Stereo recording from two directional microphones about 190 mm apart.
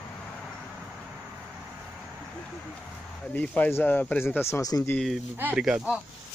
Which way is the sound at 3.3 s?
5° left (ahead or behind).